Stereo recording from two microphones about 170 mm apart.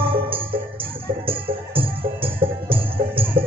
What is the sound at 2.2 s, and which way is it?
Music, 30° right (ahead or behind).